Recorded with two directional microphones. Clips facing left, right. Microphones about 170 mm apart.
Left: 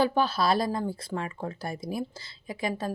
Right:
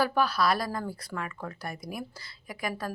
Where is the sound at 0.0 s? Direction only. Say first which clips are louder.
Left 1 dB; 25° left (ahead or behind).